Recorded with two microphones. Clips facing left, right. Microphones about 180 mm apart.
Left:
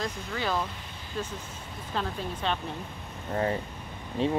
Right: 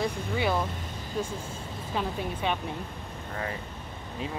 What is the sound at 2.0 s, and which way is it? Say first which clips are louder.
Speech: right 1 dB; 10° right (ahead or behind).